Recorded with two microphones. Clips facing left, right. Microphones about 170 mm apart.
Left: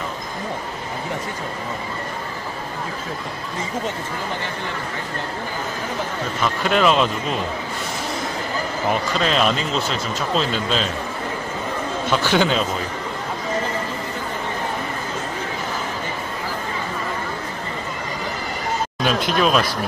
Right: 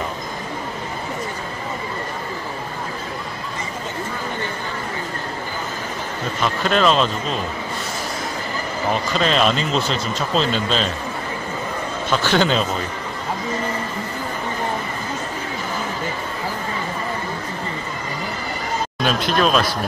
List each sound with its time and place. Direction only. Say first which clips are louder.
6.4 s speech: even; 10° left (ahead or behind)
9.2 s speech: right 3 dB; 5° left (ahead or behind)
12.1 s speech: right 1 dB; 10° left (ahead or behind)
19.0 s speech: even; 10° left (ahead or behind)